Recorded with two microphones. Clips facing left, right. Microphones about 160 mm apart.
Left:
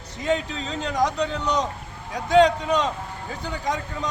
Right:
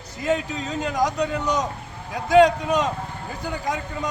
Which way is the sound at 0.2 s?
5° right (ahead or behind).